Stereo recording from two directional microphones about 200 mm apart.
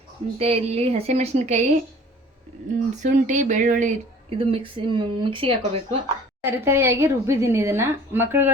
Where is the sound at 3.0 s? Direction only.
40° right (ahead or behind).